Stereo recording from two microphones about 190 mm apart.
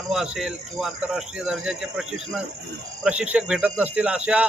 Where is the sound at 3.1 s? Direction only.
5° right (ahead or behind).